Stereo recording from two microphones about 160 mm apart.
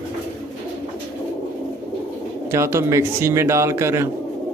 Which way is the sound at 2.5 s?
15° right (ahead or behind).